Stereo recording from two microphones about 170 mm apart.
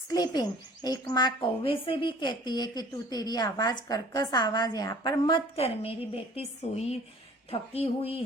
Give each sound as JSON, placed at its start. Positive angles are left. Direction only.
{"t": 0.1, "sound": "a woman's voice", "side_deg": 25}